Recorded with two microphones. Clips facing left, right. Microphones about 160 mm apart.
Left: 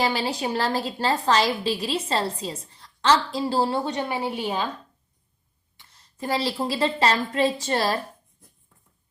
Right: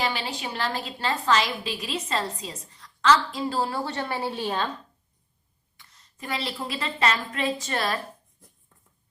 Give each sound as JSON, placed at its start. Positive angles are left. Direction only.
{"t": 0.0, "sound": "a woman's voice", "side_deg": 35}
{"t": 3.8, "sound": "a woman's voice", "side_deg": 15}
{"t": 5.7, "sound": "a woman's voice", "side_deg": 30}